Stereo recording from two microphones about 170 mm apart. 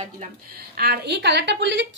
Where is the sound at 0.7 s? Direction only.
65° right (ahead or behind); by 1.9 s 90° right.